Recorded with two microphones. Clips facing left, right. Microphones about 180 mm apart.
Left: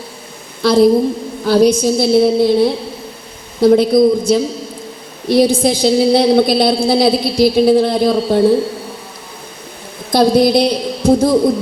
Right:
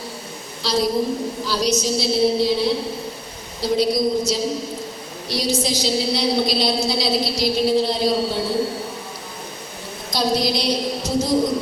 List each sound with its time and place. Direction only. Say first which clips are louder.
0.6 s a woman's voice: left 10 dB; 55° left (ahead or behind)
10.1 s a woman's voice: left 10 dB; 55° left (ahead or behind)